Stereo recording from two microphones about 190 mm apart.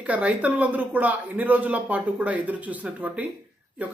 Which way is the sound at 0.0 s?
5° right (ahead or behind).